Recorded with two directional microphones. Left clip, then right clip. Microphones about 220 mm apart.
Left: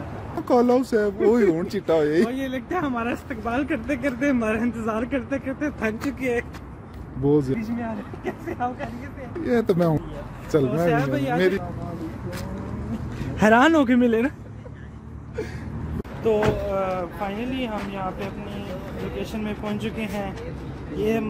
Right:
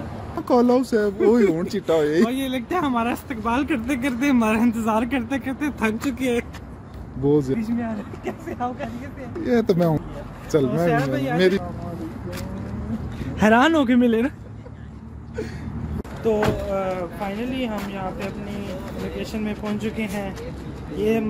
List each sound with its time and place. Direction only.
0.5 s speech: centre (ahead or behind)
2.2 s speech: 35° right (ahead or behind)
7.2 s speech: centre (ahead or behind)
10.9 s speech: 15° left (ahead or behind)
11.3 s speech: 20° right (ahead or behind)
13.4 s speech: 5° left (ahead or behind)
16.2 s speech: 5° left (ahead or behind)
19.3 s speech: 10° left (ahead or behind)